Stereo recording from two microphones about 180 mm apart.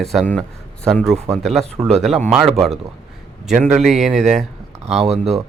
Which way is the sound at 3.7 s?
Centre (ahead or behind).